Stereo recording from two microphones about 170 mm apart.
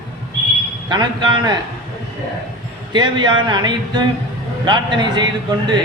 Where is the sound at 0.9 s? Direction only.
25° right (ahead or behind).